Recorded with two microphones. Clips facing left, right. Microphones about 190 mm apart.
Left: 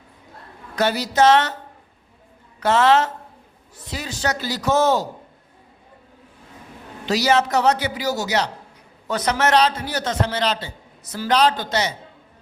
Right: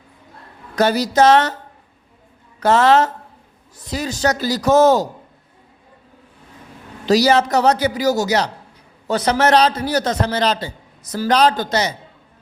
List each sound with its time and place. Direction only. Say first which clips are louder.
0.8 s a man's voice: right 3 dB; 40° right (ahead or behind)
2.6 s a man's voice: right 3 dB; 40° right (ahead or behind)
7.0 s a man's voice: right 5 dB; 35° right (ahead or behind)